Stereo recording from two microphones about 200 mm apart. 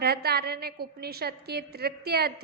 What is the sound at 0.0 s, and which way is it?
A woman's voice, 50° right (ahead or behind).